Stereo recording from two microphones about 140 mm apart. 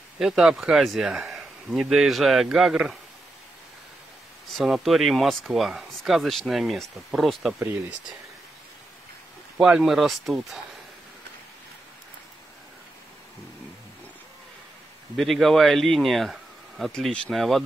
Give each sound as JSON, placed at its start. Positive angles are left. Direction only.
{"t": 0.2, "sound": "speech", "side_deg": -5}
{"t": 4.6, "sound": "speech", "side_deg": 0}
{"t": 7.5, "sound": "speech", "side_deg": -15}
{"t": 9.6, "sound": "speech", "side_deg": -5}
{"t": 15.1, "sound": "speech", "side_deg": 0}